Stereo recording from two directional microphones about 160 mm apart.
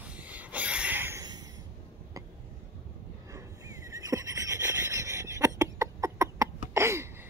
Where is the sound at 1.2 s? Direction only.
25° right (ahead or behind).